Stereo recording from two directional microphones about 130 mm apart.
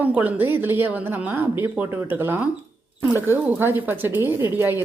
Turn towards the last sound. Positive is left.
turn(degrees=-15)  # may be behind; listen again after turning